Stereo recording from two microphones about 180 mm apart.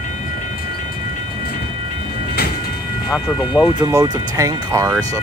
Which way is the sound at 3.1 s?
25° left (ahead or behind).